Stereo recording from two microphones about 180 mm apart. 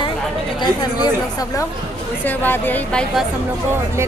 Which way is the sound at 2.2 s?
10° left (ahead or behind).